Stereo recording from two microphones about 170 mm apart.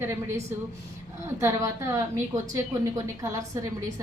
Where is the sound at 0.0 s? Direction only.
15° right (ahead or behind).